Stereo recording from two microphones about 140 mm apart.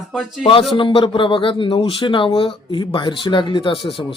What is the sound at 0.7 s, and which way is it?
Speech, 35° left (ahead or behind).